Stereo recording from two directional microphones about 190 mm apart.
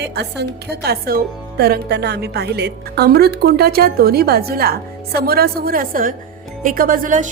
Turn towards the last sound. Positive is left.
turn(degrees=-45)  # may be behind; listen again after turning